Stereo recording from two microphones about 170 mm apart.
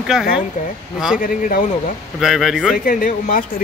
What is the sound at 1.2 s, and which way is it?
Speech, 55° left (ahead or behind).